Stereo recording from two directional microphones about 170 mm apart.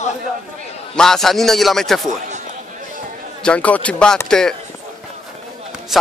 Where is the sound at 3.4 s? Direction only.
10° left (ahead or behind).